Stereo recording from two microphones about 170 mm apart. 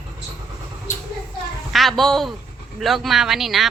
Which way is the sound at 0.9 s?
45° left (ahead or behind).